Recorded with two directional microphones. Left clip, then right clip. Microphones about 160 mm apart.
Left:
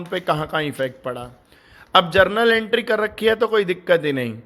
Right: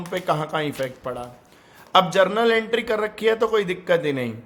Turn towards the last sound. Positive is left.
turn(degrees=30)  # may be behind; listen again after turning